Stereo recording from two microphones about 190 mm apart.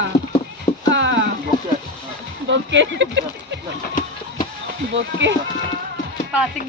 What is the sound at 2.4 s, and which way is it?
Speech, 70° right (ahead or behind).